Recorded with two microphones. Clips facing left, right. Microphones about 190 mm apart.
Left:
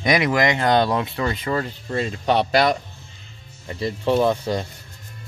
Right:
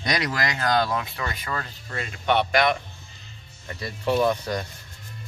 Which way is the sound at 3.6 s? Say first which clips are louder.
Left 4 dB; 25° left (ahead or behind).